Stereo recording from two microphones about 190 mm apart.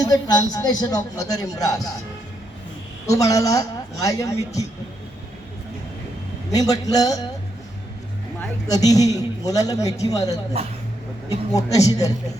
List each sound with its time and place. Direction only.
0.0 s a man's voice: 20° left (ahead or behind)
3.1 s a man's voice: 15° left (ahead or behind)
6.5 s a man's voice: 20° left (ahead or behind)
8.7 s a man's voice: 20° left (ahead or behind)
11.5 s a man's voice: 20° left (ahead or behind)